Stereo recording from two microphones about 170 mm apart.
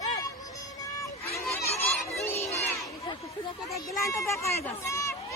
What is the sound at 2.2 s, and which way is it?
Crowd, 15° left (ahead or behind).